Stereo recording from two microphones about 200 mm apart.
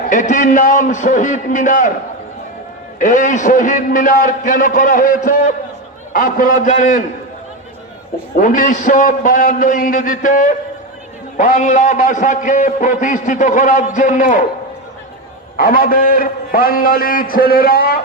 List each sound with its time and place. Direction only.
0.1 s a man's voice: 40° left (ahead or behind)
3.0 s a man's voice: 40° left (ahead or behind)
8.4 s a man's voice: 40° left (ahead or behind)
15.5 s a man's voice: 45° left (ahead or behind)